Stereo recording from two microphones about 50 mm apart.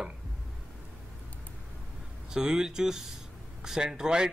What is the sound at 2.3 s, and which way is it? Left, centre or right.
Speech, centre.